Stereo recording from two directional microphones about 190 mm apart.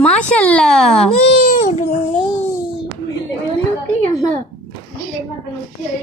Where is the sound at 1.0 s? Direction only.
30° left (ahead or behind).